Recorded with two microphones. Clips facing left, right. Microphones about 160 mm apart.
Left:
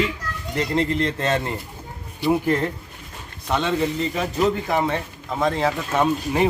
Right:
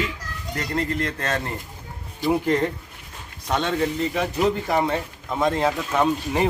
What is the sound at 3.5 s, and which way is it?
Speech, 10° left (ahead or behind).